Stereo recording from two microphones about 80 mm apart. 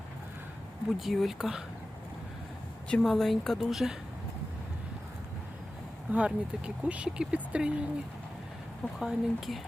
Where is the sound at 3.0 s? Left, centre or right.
Centre.